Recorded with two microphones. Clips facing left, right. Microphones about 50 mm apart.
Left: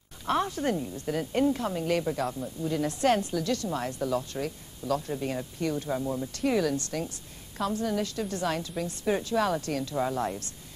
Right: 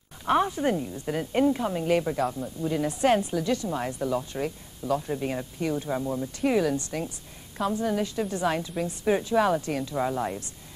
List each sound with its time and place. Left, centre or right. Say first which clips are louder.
0.3 s a woman's voice: right 4 dB; centre